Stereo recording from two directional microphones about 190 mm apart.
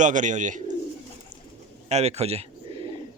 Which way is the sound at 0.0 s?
40° right (ahead or behind).